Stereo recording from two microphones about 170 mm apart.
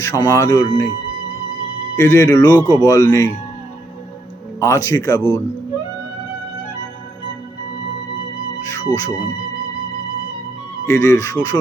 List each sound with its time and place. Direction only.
0.0 s speech: 20° left (ahead or behind)
2.0 s speech: 15° left (ahead or behind)
4.6 s speech: 15° left (ahead or behind)
8.6 s speech: 20° left (ahead or behind)
10.8 s speech: 15° left (ahead or behind)